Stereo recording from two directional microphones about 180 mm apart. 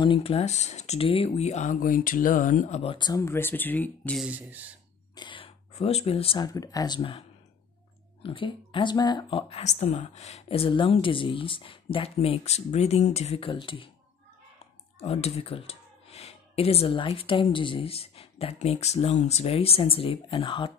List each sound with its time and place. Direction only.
0.0 s speech: 30° left (ahead or behind); by 2.8 s 45° left (ahead or behind)
2.8 s speech: 30° left (ahead or behind); by 4.3 s 5° left (ahead or behind)
4.3 s speech: 10° right (ahead or behind)
5.1 s speech: 25° left (ahead or behind)
9.5 s speech: 40° left (ahead or behind)
15.0 s speech: 35° left (ahead or behind)